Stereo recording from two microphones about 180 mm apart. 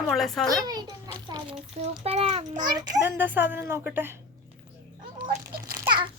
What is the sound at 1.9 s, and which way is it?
Speech, 35° right (ahead or behind).